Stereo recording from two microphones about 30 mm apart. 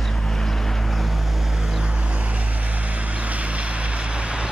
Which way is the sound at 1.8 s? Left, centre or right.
Right.